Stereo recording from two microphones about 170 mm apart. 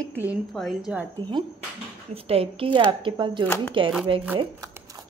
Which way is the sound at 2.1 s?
35° right (ahead or behind).